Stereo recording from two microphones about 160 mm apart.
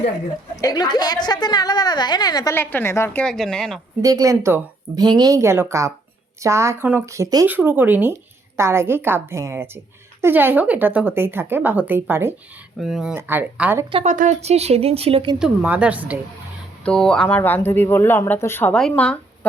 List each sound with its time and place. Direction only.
0.5 s a woman's voice: 25° left (ahead or behind); by 3.8 s 5° left (ahead or behind)
4.0 s a woman's voice: 20° right (ahead or behind)
12.8 s speech: centre (ahead or behind)
13.1 s a woman's voice: 10° right (ahead or behind)
14.0 s speech: 50° right (ahead or behind)
15.4 s a woman's voice: 5° right (ahead or behind)
16.8 s speech: 5° left (ahead or behind)